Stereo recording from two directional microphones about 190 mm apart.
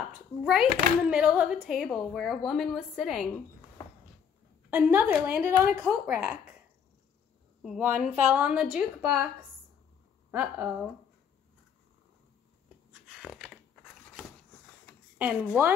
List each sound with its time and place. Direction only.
0.4 s a woman's voice: 5° right (ahead or behind)
3.3 s a sound: 15° left (ahead or behind)
4.6 s a woman's voice: 10° right (ahead or behind)
7.6 s a woman's voice: 5° right (ahead or behind)
10.3 s a woman's voice: 15° right (ahead or behind)
13.1 s a sound: 5° right (ahead or behind)
15.1 s a woman's voice: 10° right (ahead or behind)